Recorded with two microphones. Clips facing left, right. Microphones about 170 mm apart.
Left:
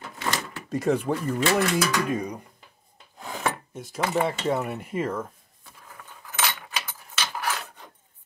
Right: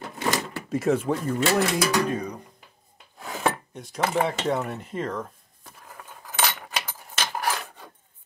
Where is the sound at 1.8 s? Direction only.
35° right (ahead or behind).